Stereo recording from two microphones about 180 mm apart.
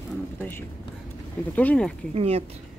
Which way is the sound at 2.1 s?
35° right (ahead or behind).